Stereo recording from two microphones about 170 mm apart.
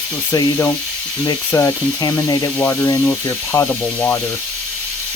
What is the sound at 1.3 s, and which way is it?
Speech, 20° left (ahead or behind).